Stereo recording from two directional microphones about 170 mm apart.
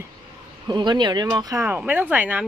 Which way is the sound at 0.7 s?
25° right (ahead or behind).